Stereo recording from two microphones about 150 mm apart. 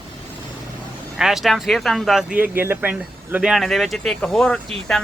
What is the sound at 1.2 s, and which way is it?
Speech, 5° right (ahead or behind).